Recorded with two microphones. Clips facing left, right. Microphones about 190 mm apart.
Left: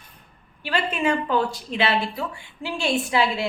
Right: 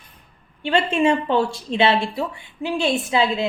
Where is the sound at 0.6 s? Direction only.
25° right (ahead or behind).